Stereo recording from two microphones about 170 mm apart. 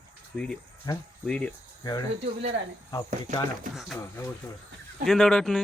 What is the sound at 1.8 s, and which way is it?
Speech, 20° left (ahead or behind).